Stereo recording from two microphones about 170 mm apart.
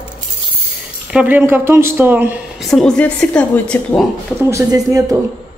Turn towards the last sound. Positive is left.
turn(degrees=-20)  # may be behind; listen again after turning